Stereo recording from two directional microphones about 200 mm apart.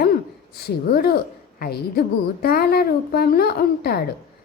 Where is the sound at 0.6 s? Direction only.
50° left (ahead or behind).